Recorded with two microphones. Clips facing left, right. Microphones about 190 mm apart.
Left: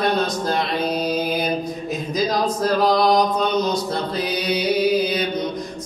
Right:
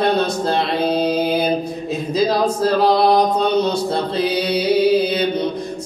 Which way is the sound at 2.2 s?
30° right (ahead or behind).